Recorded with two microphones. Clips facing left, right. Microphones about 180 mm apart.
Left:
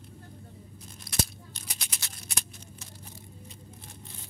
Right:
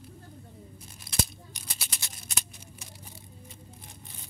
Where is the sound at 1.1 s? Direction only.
50° right (ahead or behind).